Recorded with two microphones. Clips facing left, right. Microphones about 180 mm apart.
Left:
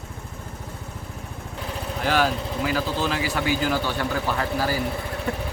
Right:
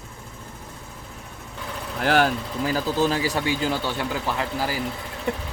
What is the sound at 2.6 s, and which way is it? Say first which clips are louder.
A man's voice: right 3 dB; 35° right (ahead or behind).